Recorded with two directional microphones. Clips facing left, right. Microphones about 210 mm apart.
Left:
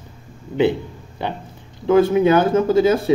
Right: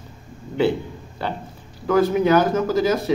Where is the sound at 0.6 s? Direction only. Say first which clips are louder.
Left 2 dB; 20° left (ahead or behind).